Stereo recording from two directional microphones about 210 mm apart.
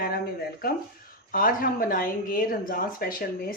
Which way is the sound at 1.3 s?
45° left (ahead or behind).